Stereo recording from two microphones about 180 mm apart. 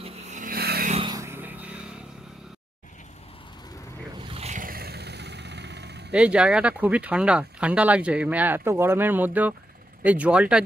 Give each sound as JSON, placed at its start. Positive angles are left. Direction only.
{"t": 0.0, "sound": "a sound", "side_deg": -45}
{"t": 0.9, "sound": "vehicle", "side_deg": -25}
{"t": 4.3, "sound": "vehicle", "side_deg": -40}
{"t": 6.1, "sound": "speech", "side_deg": -5}